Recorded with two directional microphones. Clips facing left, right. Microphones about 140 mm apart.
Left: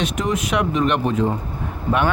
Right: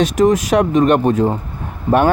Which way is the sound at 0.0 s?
40° right (ahead or behind).